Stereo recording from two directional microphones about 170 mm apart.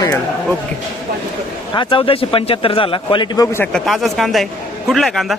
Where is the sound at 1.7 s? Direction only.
30° left (ahead or behind).